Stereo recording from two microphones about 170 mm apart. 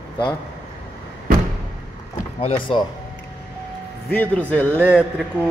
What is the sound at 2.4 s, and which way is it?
Speech, 30° left (ahead or behind).